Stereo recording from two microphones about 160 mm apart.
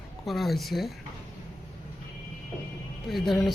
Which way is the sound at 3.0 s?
Centre (ahead or behind).